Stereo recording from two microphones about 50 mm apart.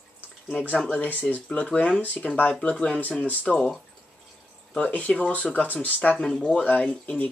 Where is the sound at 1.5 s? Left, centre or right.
Left.